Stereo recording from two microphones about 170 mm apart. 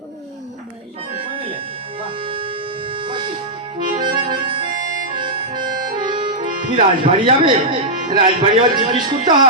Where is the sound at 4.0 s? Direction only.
25° right (ahead or behind).